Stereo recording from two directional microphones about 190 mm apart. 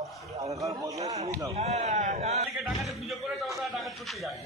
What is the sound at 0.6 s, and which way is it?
Speech, 15° right (ahead or behind).